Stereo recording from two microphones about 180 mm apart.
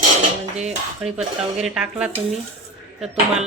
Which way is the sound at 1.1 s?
5° right (ahead or behind).